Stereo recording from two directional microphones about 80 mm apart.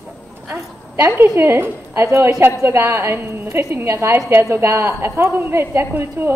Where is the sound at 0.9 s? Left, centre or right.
Right.